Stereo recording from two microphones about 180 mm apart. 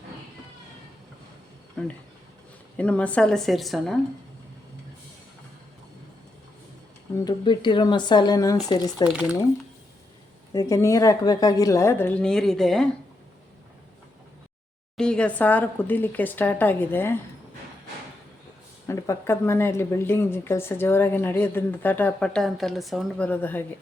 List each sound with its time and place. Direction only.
1.8 s a woman's voice: 5° left (ahead or behind)
7.3 s speech: 25° left (ahead or behind)
9.0 s a woman's voice: 5° right (ahead or behind)
10.5 s a woman's voice: 20° left (ahead or behind); by 12.9 s 5° left (ahead or behind)
14.9 s a woman's voice: 5° left (ahead or behind)
18.9 s a woman's voice: 15° left (ahead or behind)